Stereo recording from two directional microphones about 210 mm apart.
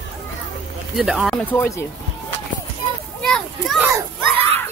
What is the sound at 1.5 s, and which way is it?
Speech, 10° left (ahead or behind).